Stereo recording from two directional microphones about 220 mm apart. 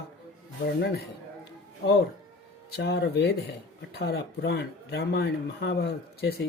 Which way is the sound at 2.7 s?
50° left (ahead or behind).